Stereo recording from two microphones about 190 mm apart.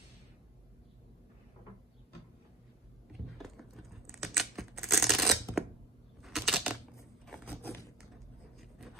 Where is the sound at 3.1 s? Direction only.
Centre (ahead or behind).